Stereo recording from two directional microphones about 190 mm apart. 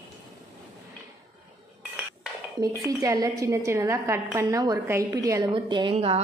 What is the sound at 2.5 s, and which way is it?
A woman's voice, 20° right (ahead or behind).